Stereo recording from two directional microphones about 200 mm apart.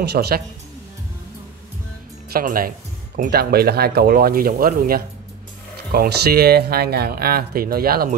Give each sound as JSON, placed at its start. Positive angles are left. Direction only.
{"t": 0.0, "sound": "speech", "side_deg": -55}
{"t": 2.3, "sound": "speech", "side_deg": -45}